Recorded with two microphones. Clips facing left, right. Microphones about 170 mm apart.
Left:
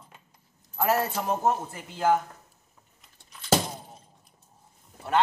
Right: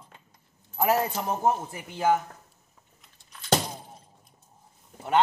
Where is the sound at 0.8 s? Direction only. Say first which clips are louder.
Right 1 dB; 15° right (ahead or behind).